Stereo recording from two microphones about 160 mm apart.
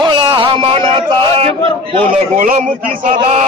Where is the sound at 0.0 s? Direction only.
25° right (ahead or behind).